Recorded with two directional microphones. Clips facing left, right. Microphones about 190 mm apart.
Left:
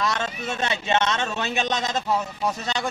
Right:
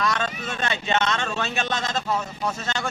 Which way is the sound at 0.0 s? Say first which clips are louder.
Even; 25° left (ahead or behind).